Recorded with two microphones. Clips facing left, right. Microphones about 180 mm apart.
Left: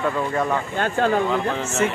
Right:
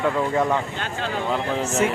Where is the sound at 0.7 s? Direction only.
50° left (ahead or behind).